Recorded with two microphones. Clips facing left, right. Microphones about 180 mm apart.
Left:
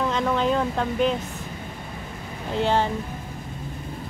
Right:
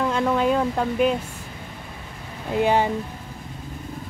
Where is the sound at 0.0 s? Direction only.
5° right (ahead or behind).